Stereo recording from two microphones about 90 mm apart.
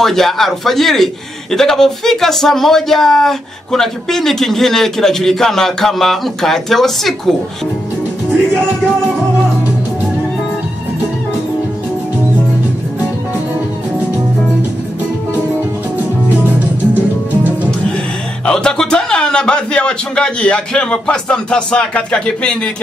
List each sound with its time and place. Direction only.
0.0 s speech: 5° left (ahead or behind)
17.3 s music: 20° right (ahead or behind)
17.6 s speech: 10° left (ahead or behind)